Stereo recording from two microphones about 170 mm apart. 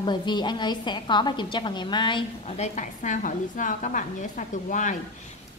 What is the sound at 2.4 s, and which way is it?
A woman's voice, 40° left (ahead or behind).